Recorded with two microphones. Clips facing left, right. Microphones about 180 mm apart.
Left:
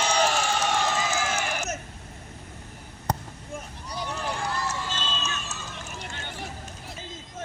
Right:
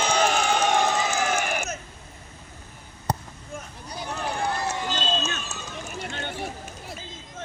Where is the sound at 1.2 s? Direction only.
50° right (ahead or behind).